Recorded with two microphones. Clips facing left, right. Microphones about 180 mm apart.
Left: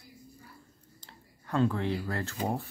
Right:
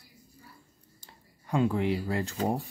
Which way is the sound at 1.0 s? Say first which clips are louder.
Even; 10° right (ahead or behind).